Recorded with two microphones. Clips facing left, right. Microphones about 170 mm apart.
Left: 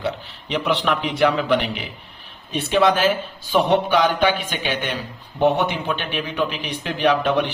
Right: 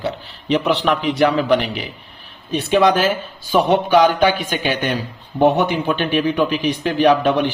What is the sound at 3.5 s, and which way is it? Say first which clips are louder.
A man's voice: right 3 dB; 40° right (ahead or behind).